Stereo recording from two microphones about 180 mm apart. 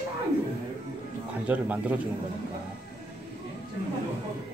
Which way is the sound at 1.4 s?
10° right (ahead or behind).